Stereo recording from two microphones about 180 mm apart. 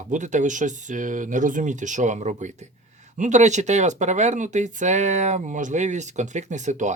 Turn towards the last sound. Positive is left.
turn(degrees=-40)  # may be behind; listen again after turning